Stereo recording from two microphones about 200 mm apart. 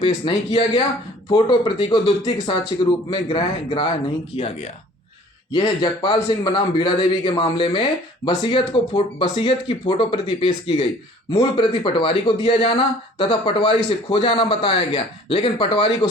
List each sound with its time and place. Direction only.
0.0 s a man's voice: 25° left (ahead or behind)